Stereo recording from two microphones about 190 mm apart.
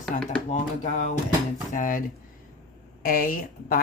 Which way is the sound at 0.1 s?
40° left (ahead or behind).